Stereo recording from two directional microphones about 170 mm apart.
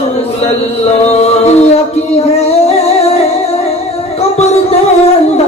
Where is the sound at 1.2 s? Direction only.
40° left (ahead or behind).